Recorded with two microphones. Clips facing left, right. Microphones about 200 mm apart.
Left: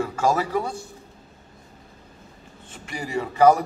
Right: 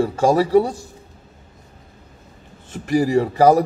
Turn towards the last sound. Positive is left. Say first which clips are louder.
# right 4 dB
turn(degrees=-40)  # may be behind; listen again after turning